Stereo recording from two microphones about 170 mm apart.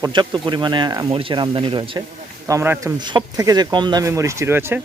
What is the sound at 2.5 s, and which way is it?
Speech, 20° right (ahead or behind).